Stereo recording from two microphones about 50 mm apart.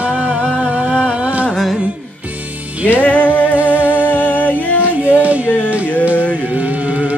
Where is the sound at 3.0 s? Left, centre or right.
Left.